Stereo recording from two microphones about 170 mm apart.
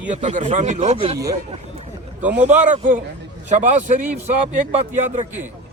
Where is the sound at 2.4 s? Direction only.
45° right (ahead or behind).